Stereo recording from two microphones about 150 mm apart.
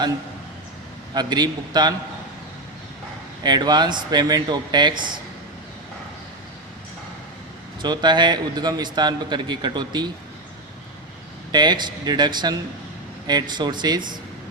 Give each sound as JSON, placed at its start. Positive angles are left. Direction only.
{"t": 1.1, "sound": "a man's voice", "side_deg": -30}
{"t": 3.4, "sound": "a man's voice", "side_deg": -30}
{"t": 7.8, "sound": "a man's voice", "side_deg": -30}
{"t": 11.5, "sound": "a man's voice", "side_deg": -30}